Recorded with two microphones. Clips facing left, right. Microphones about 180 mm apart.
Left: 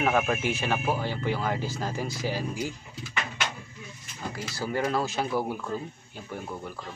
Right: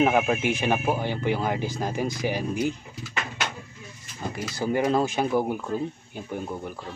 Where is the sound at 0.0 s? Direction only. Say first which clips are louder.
Right 4 dB; 15° right (ahead or behind).